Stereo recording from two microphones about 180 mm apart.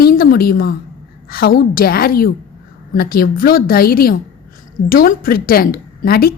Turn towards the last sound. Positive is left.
turn(degrees=55)  # may be behind; listen again after turning